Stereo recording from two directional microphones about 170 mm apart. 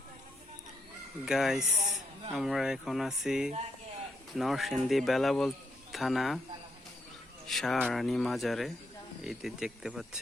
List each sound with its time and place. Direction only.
1.2 s speech: 5° right (ahead or behind)
1.7 s a sound: 50° right (ahead or behind)
2.3 s speech: centre (ahead or behind)
7.4 s speech: centre (ahead or behind)